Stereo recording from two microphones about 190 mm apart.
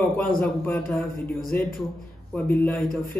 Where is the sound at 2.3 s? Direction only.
10° left (ahead or behind).